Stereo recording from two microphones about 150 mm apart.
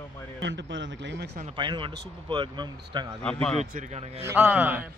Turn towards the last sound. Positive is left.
turn(degrees=-10)  # may be behind; listen again after turning